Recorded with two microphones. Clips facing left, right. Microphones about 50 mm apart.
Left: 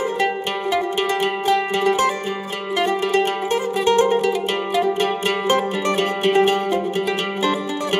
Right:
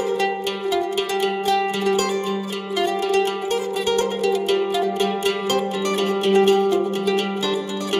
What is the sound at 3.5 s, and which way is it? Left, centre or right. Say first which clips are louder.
Music: left 6 dB; left.